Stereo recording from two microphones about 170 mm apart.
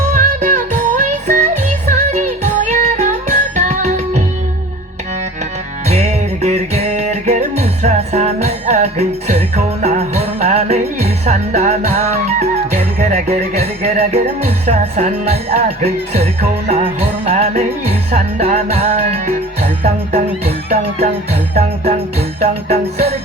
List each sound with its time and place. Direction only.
0.1 s music: 50° right (ahead or behind)
5.9 s music: 40° right (ahead or behind)
16.6 s music: 35° right (ahead or behind)
20.4 s speech: 45° right (ahead or behind)
21.5 s music: 40° right (ahead or behind)